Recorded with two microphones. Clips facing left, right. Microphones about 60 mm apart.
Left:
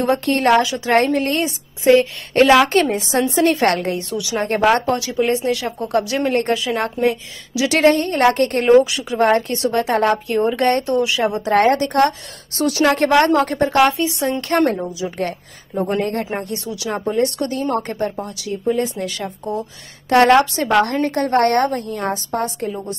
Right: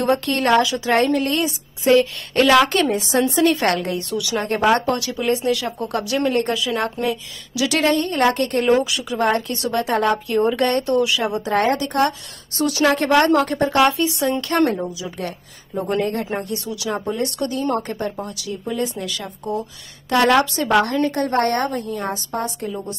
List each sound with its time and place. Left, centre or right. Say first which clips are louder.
0.0 s speech: left 2 dB; left
11.4 s a woman's voice: left 6 dB; left
15.1 s a woman's voice: left 5 dB; left
20.1 s a woman's voice: left 4 dB; left